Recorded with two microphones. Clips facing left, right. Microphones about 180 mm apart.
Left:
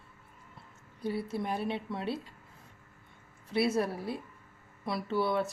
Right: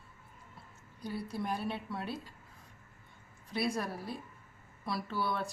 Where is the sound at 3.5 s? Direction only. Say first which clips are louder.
Left 6 dB; 25° left (ahead or behind).